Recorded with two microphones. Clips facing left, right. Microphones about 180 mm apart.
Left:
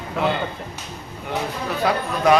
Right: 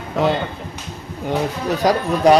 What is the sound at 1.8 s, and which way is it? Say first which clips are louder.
Speech: right 5 dB; 40° right (ahead or behind).